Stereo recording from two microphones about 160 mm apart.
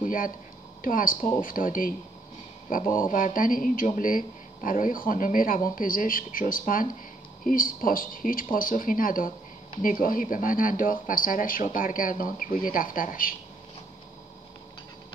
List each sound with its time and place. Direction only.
0.0 s a sound: 60° left (ahead or behind)
0.8 s speech: 60° left (ahead or behind)
3.0 s speech: 55° left (ahead or behind)